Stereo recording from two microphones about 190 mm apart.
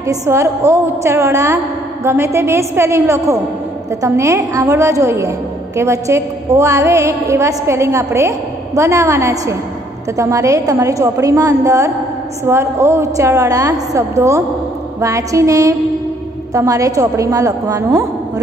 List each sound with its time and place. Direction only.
0.0 s a woman's voice: 15° right (ahead or behind)